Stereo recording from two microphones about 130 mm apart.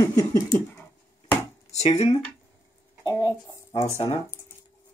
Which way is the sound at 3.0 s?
25° left (ahead or behind).